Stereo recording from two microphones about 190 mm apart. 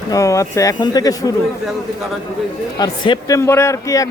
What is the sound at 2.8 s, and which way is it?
Speech, 25° left (ahead or behind).